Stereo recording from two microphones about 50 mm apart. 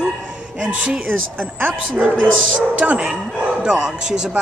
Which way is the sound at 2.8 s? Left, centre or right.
Right.